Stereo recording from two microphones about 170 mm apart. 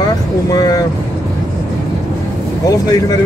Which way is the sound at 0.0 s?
20° left (ahead or behind).